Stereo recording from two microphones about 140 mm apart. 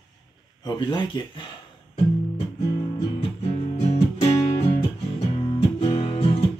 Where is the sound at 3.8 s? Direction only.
45° left (ahead or behind).